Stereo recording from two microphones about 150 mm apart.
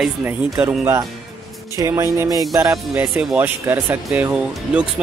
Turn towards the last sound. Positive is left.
turn(degrees=-10)  # may be behind; listen again after turning